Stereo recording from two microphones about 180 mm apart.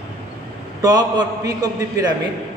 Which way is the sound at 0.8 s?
20° right (ahead or behind).